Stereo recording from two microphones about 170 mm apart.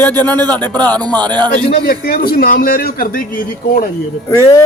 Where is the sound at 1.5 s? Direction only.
55° left (ahead or behind).